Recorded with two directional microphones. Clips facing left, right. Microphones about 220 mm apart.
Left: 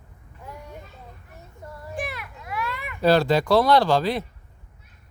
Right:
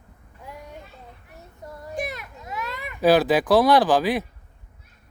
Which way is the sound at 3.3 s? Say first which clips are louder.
Right 1 dB; 15° right (ahead or behind).